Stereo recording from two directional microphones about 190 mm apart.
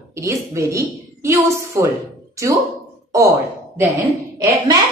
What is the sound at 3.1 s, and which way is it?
Speech, 15° right (ahead or behind).